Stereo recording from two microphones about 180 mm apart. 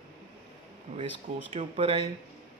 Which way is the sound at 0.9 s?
40° right (ahead or behind).